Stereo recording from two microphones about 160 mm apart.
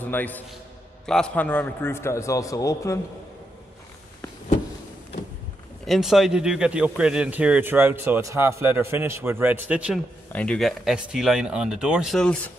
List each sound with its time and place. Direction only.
0.0 s a man's voice: 10° left (ahead or behind)
5.9 s a man's voice: centre (ahead or behind)
10.3 s speech: 5° left (ahead or behind)